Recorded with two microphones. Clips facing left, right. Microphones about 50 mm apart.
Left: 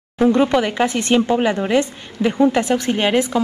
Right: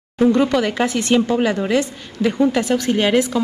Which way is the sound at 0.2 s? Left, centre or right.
Centre.